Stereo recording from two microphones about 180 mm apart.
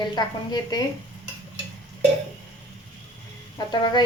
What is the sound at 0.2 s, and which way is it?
Speech, 25° left (ahead or behind).